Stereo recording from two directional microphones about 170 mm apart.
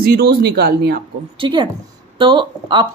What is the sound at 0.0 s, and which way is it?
Speech, 65° right (ahead or behind).